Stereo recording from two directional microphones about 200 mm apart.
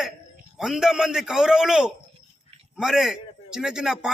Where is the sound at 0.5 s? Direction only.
Centre (ahead or behind).